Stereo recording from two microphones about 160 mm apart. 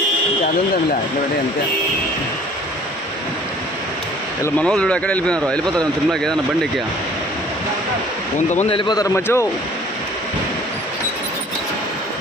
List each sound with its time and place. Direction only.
4.4 s speech: 10° left (ahead or behind)
8.5 s a man's voice: 30° left (ahead or behind); by 9.5 s 15° left (ahead or behind)